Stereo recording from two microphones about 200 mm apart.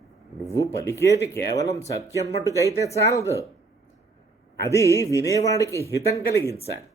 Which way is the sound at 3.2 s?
15° right (ahead or behind).